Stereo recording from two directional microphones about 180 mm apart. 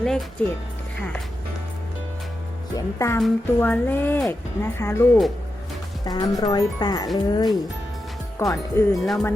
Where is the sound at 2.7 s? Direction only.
15° left (ahead or behind).